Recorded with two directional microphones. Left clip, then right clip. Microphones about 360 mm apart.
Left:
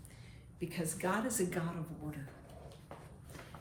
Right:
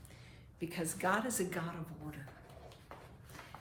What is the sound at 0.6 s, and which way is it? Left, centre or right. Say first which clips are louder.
A woman's voice: right 1 dB; centre.